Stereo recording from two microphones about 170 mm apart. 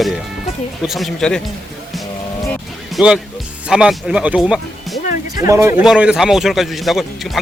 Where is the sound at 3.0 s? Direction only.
5° right (ahead or behind).